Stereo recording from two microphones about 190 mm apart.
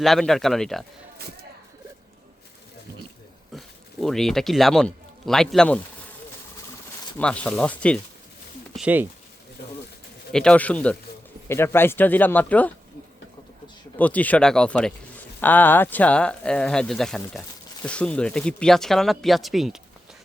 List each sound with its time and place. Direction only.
0.0 s speech: centre (ahead or behind)
3.5 s a sound: centre (ahead or behind)
4.0 s speech: centre (ahead or behind)
7.2 s speech: 5° left (ahead or behind)
8.7 s speech: 5° right (ahead or behind)
10.3 s speech: 5° left (ahead or behind)
14.0 s speech: 10° left (ahead or behind)